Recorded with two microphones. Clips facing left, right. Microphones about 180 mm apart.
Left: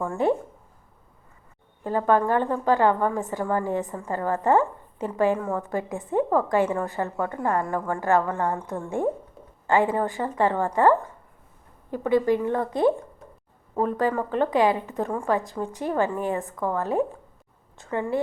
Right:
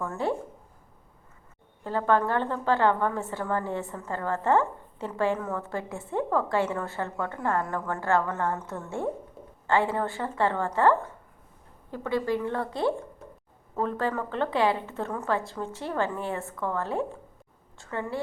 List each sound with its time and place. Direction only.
0.0 s a woman's voice: 15° left (ahead or behind)
1.8 s a woman's voice: 15° left (ahead or behind)